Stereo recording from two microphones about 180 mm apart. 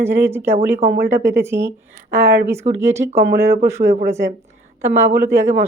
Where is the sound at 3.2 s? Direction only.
60° right (ahead or behind).